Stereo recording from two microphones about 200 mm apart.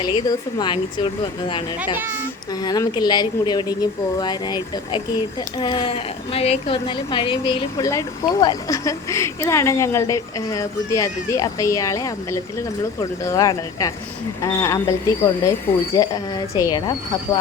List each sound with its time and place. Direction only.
0.0 s a woman's voice: 20° left (ahead or behind)